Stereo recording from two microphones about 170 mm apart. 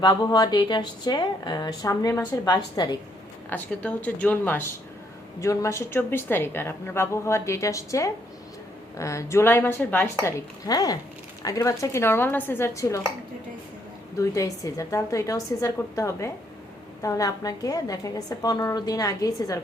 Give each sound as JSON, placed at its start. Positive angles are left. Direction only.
{"t": 0.0, "sound": "speech", "side_deg": 25}
{"t": 3.5, "sound": "a woman's voice", "side_deg": 10}
{"t": 14.2, "sound": "speech", "side_deg": 20}